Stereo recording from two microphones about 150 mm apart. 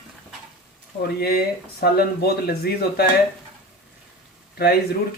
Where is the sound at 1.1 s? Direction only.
90° left.